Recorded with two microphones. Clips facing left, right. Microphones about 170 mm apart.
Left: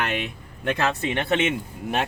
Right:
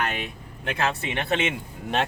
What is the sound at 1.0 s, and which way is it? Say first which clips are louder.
Speech: left 3 dB; 35° left (ahead or behind).